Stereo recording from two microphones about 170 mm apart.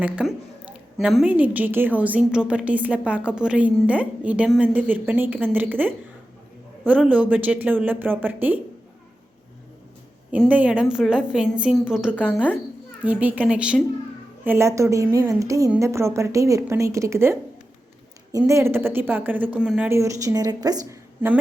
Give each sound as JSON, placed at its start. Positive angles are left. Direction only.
{"t": 0.0, "sound": "a woman's voice", "side_deg": -5}
{"t": 10.3, "sound": "a woman's voice", "side_deg": -5}